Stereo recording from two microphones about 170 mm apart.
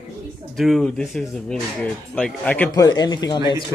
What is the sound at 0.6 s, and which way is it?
Speech, centre (ahead or behind).